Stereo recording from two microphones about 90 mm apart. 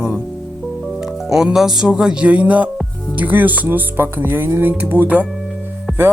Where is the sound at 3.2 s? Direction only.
20° right (ahead or behind).